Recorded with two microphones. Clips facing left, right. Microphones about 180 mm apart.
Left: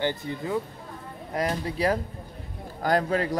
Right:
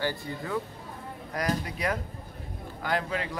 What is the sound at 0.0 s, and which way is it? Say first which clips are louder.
Speech: left 4 dB; 20° left (ahead or behind).